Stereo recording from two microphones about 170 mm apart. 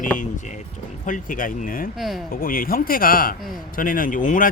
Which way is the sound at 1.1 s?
55° left (ahead or behind).